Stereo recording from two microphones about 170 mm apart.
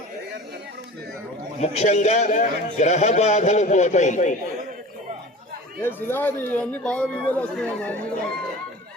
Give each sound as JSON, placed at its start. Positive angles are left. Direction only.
{"t": 1.6, "sound": "a man's voice", "side_deg": 40}
{"t": 5.8, "sound": "speech", "side_deg": 10}